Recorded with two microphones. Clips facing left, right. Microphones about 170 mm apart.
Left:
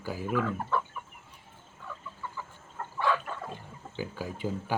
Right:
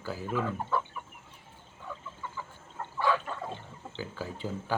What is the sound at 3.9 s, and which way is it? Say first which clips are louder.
Speech: left 2 dB; 10° left (ahead or behind).